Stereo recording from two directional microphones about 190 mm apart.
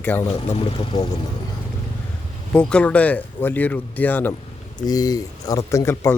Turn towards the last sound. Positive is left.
turn(degrees=15)  # may be behind; listen again after turning